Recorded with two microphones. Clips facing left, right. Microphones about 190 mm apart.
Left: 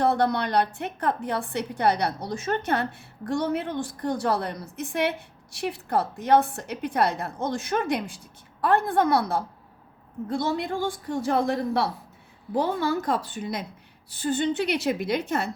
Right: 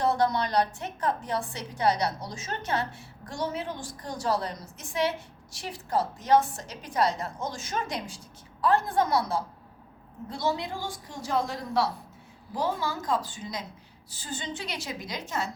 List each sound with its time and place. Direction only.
0.0 s a woman's voice: 60° left (ahead or behind)